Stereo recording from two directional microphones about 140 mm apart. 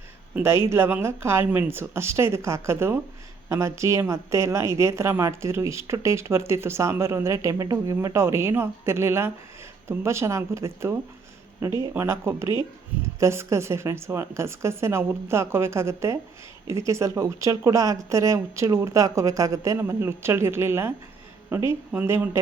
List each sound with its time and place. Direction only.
0.3 s a woman's voice: 20° right (ahead or behind)
11.9 s a woman's voice: 20° right (ahead or behind)